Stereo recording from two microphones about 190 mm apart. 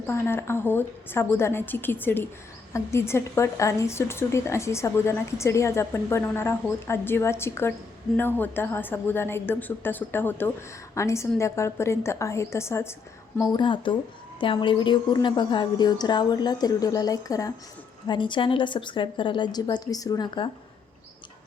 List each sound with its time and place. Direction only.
0.1 s a woman's voice: 10° left (ahead or behind)